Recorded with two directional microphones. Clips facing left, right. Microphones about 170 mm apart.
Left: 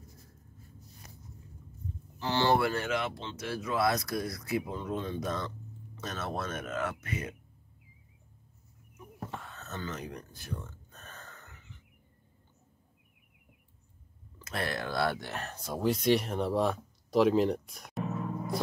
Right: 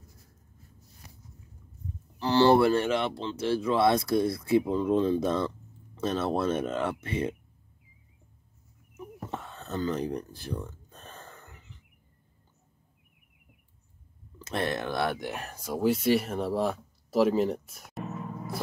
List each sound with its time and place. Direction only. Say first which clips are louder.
2.1 s speech: right 7 dB; 35° right (ahead or behind)
9.3 s speech: right 10 dB; 25° right (ahead or behind)
14.4 s speech: right 5 dB; 25° right (ahead or behind); by 18.0 s 5° right (ahead or behind)